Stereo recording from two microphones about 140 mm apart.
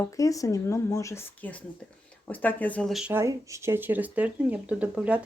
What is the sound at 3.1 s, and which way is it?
A woman's voice, 20° right (ahead or behind).